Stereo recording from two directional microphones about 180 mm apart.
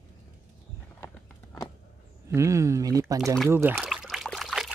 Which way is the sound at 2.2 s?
15° right (ahead or behind).